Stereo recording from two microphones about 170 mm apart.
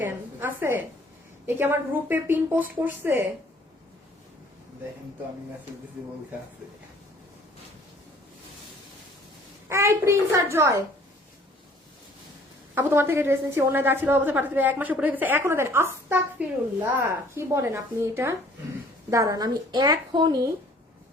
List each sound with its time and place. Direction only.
0.0 s a sound: 10° right (ahead or behind)
1.5 s a woman's voice: 15° right (ahead or behind)
9.6 s a woman's voice: 15° right (ahead or behind)
12.7 s a woman's voice: 15° right (ahead or behind)